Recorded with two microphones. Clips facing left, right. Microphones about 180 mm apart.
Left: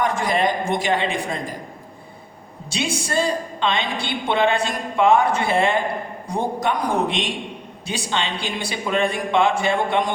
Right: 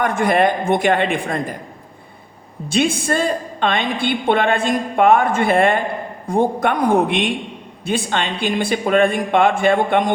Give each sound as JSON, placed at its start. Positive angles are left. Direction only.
{"t": 0.0, "sound": "a woman's voice", "side_deg": -55}
{"t": 2.6, "sound": "a woman's voice", "side_deg": -50}